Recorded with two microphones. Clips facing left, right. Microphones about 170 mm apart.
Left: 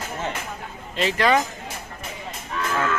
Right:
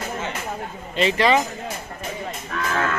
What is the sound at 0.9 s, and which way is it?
Speech, centre (ahead or behind).